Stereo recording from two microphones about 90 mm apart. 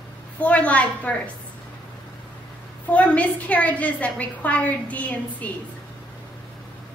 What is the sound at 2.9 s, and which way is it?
A woman's voice, 15° left (ahead or behind).